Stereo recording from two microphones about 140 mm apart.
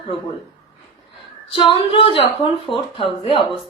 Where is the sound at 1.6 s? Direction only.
40° left (ahead or behind).